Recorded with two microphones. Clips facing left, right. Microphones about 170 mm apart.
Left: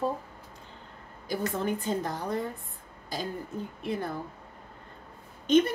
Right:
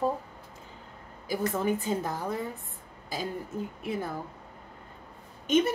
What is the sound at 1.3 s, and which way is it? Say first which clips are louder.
A woman's voice: right 2 dB; 5° right (ahead or behind).